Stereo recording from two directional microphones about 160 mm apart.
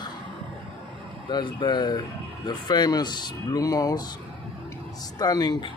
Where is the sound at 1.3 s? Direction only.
30° left (ahead or behind).